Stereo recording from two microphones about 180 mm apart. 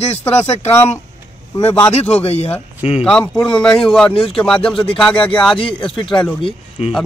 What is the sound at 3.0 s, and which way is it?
A man's voice, 5° left (ahead or behind).